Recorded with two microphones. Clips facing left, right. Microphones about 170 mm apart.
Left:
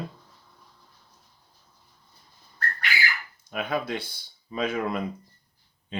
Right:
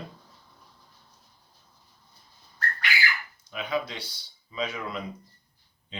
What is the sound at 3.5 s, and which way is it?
Speech, 50° left (ahead or behind).